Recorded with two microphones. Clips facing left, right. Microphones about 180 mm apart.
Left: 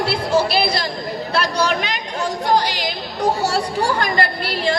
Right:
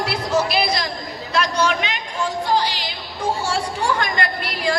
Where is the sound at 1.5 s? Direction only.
35° left (ahead or behind).